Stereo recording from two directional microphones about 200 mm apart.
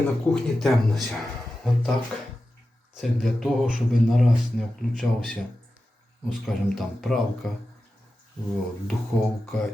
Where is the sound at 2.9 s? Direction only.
Centre (ahead or behind).